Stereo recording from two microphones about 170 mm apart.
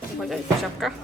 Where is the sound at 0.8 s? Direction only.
Centre (ahead or behind).